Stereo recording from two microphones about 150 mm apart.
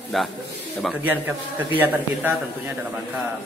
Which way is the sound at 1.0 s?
10° right (ahead or behind).